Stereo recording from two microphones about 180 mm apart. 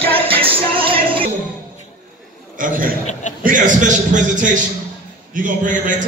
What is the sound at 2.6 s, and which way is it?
A man's voice, 50° right (ahead or behind).